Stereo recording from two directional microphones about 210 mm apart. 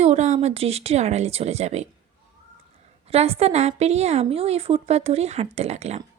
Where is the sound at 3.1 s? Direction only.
30° right (ahead or behind).